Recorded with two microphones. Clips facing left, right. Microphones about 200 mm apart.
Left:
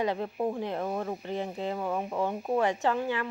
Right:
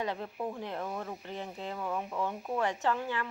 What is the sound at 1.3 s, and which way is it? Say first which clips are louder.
Speech: left 7 dB; 20° left (ahead or behind).